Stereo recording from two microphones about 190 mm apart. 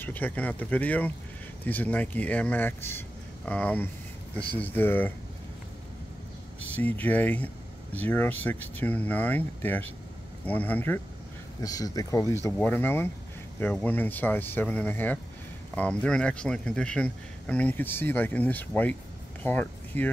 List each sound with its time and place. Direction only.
0.0 s speech: 10° left (ahead or behind)
6.7 s speech: 10° left (ahead or behind)